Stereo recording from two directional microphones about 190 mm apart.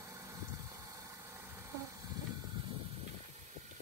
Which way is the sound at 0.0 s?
15° right (ahead or behind).